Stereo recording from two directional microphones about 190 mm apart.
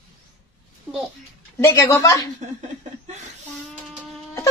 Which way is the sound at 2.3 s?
40° right (ahead or behind).